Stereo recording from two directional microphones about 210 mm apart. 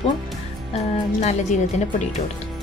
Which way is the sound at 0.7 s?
30° left (ahead or behind).